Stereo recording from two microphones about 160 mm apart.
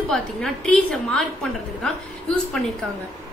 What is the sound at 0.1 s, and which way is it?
A woman's voice, 5° left (ahead or behind).